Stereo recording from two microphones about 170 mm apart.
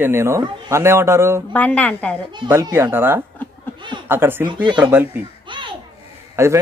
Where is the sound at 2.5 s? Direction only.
15° right (ahead or behind).